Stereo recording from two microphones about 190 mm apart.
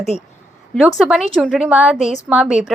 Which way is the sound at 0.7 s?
Centre (ahead or behind).